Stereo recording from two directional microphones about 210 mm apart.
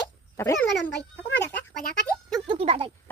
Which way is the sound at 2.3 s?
25° right (ahead or behind).